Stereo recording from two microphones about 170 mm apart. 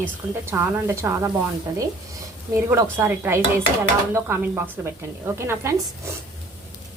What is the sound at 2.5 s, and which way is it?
Speech, 15° right (ahead or behind).